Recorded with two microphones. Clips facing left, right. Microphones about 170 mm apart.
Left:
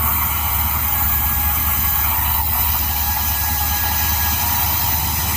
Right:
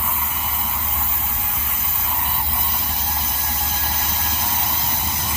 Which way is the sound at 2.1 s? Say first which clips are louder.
Right 1 dB; 80° left.